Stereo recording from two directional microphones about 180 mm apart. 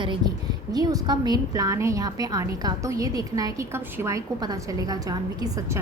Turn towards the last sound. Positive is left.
turn(degrees=-20)  # may be behind; listen again after turning